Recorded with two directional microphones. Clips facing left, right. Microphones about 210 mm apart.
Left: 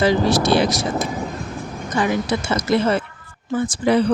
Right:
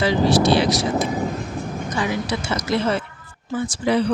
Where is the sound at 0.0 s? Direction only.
50° left (ahead or behind).